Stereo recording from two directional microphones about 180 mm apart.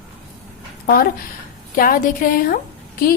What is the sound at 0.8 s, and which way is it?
A woman's voice, 55° left (ahead or behind).